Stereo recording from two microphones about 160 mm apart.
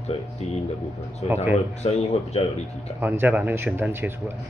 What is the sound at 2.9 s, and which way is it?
Speech, 15° right (ahead or behind).